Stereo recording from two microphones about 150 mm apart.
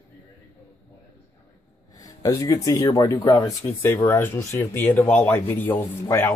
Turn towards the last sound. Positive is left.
turn(degrees=20)  # may be behind; listen again after turning